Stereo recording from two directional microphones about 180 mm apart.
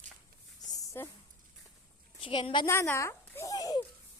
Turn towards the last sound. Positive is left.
turn(degrees=20)  # may be behind; listen again after turning